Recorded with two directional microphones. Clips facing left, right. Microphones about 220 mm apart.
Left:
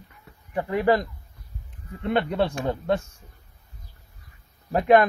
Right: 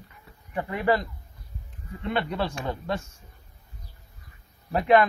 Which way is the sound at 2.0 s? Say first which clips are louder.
Left 5 dB; 55° left (ahead or behind).